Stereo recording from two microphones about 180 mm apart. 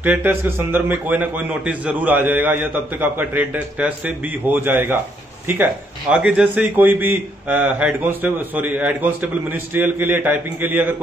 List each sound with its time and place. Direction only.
0.0 s a man's voice: 10° right (ahead or behind)